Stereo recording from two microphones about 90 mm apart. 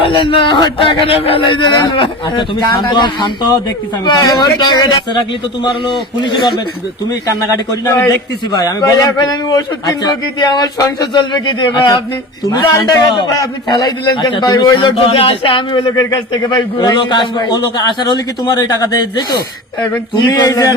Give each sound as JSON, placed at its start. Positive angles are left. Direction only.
{"t": 0.2, "sound": "a man's voice", "side_deg": 70}
{"t": 5.6, "sound": "a man's voice", "side_deg": 60}
{"t": 7.7, "sound": "a man's voice", "side_deg": 40}
{"t": 11.2, "sound": "a man's voice", "side_deg": 60}
{"t": 13.7, "sound": "a man's voice", "side_deg": 55}
{"t": 16.5, "sound": "a man's voice", "side_deg": 45}
{"t": 20.1, "sound": "speech", "side_deg": 50}